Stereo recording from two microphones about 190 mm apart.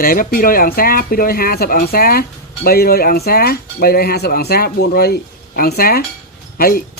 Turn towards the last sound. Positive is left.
turn(degrees=50)  # may be behind; listen again after turning